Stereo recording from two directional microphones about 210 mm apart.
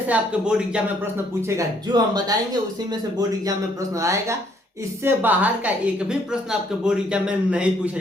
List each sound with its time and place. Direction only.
0.1 s a woman's voice: 5° right (ahead or behind)
4.0 s a woman's voice: 15° right (ahead or behind)